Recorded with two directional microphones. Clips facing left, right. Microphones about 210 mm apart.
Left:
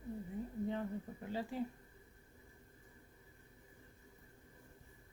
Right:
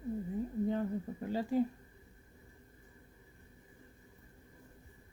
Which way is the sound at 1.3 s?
40° right (ahead or behind).